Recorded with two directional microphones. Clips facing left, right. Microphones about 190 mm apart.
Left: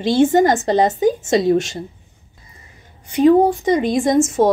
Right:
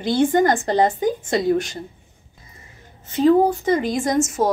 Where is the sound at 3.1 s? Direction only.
20° left (ahead or behind).